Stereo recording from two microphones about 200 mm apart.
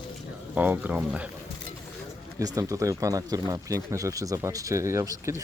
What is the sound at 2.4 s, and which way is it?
Speech, 15° right (ahead or behind).